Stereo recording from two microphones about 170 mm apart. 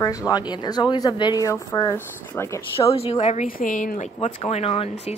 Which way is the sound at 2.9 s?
40° left (ahead or behind).